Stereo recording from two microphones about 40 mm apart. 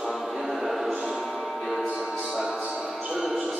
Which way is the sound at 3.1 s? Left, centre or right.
Centre.